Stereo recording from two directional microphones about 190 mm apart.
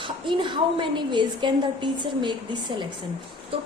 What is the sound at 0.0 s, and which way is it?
A woman's voice, 25° right (ahead or behind).